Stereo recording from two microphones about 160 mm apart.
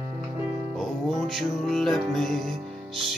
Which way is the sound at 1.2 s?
Centre (ahead or behind).